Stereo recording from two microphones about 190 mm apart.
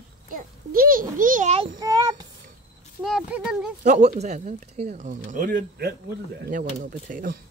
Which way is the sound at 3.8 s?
35° right (ahead or behind).